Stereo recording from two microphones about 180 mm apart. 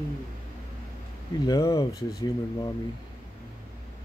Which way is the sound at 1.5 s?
20° left (ahead or behind).